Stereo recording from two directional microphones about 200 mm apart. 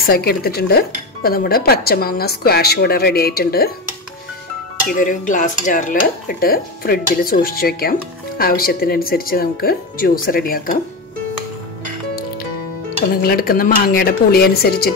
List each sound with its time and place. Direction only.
0.0 s dishes: 50° left (ahead or behind)
4.8 s dishes: 40° left (ahead or behind)
13.2 s dishes: 50° left (ahead or behind)